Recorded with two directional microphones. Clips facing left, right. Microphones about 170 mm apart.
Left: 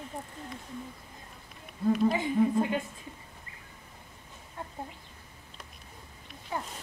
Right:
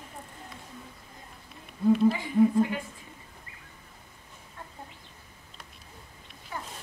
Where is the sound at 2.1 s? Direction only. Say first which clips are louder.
Right 3 dB; 20° left (ahead or behind).